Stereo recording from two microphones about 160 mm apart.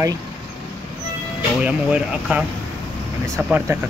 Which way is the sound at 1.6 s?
5° right (ahead or behind).